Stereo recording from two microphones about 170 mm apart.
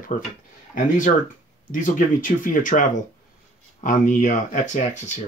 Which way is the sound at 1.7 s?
50° left (ahead or behind).